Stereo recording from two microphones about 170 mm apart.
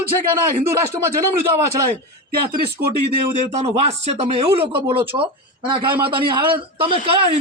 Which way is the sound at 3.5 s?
40° right (ahead or behind).